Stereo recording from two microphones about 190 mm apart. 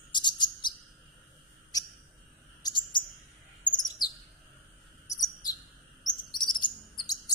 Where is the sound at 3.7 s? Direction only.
20° left (ahead or behind).